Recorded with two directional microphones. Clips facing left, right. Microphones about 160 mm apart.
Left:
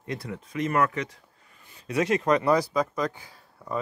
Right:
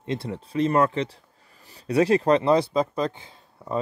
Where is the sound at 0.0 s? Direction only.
25° right (ahead or behind).